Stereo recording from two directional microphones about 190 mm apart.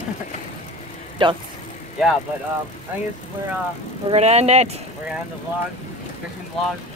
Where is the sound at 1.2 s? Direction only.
25° right (ahead or behind).